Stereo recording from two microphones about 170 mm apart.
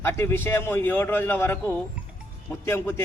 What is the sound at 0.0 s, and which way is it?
A man's voice, 15° left (ahead or behind).